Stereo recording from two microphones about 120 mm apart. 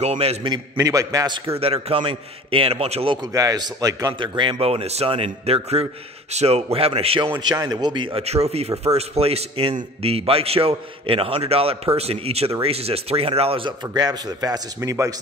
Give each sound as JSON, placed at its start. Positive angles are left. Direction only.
{"t": 0.0, "sound": "a man's voice", "side_deg": -65}
{"t": 0.5, "sound": "a man's voice", "side_deg": -30}
{"t": 1.6, "sound": "speech", "side_deg": -55}
{"t": 3.2, "sound": "a man's voice", "side_deg": -30}
{"t": 7.5, "sound": "speech", "side_deg": -35}
{"t": 8.2, "sound": "a man's voice", "side_deg": -60}
{"t": 13.9, "sound": "speech", "side_deg": -35}